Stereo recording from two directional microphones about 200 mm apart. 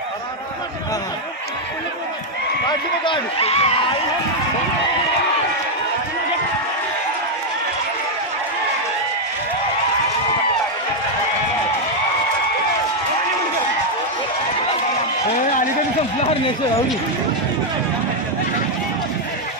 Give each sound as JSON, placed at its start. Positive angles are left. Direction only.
{"t": 3.1, "sound": "speech", "side_deg": 30}